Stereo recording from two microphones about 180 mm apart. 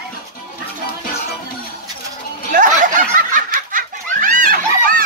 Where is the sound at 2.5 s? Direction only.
45° right (ahead or behind).